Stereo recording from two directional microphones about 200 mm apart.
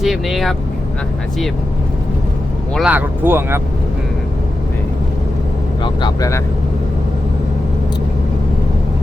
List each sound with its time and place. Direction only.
0.0 s speech: centre (ahead or behind)
2.7 s speech: 5° right (ahead or behind)
5.8 s speech: 20° left (ahead or behind)